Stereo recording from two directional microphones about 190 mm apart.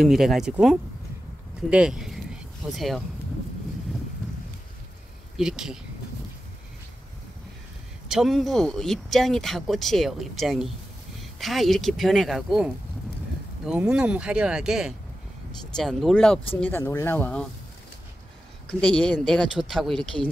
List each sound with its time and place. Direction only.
0.0 s speech: centre (ahead or behind)
5.4 s speech: 5° right (ahead or behind)
8.1 s speech: centre (ahead or behind)
13.7 s speech: 5° right (ahead or behind)
18.7 s speech: 5° left (ahead or behind)